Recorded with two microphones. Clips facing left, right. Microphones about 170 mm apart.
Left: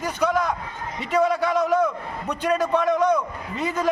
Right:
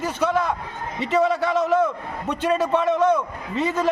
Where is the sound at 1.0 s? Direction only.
25° right (ahead or behind).